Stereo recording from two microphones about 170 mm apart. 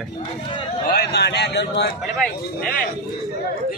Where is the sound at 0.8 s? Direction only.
70° left (ahead or behind); by 1.9 s 90° left.